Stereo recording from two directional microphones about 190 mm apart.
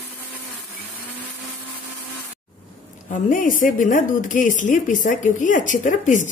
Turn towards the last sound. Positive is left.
turn(degrees=40)  # may be behind; listen again after turning